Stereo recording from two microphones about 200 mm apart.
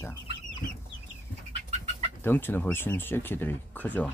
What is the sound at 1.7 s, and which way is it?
Chicken, 30° right (ahead or behind).